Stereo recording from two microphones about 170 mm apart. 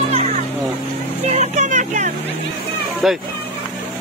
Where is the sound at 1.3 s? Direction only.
45° right (ahead or behind).